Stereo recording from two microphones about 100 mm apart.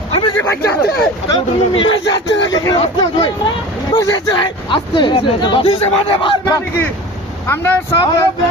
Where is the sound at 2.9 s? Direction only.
50° left (ahead or behind).